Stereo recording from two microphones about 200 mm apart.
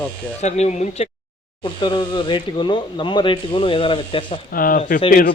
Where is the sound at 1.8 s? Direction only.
25° left (ahead or behind).